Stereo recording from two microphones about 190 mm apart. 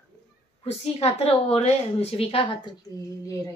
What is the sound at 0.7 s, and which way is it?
A woman's voice, 30° left (ahead or behind).